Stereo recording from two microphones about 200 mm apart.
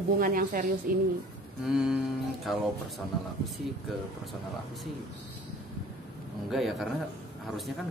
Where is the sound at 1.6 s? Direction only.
5° right (ahead or behind).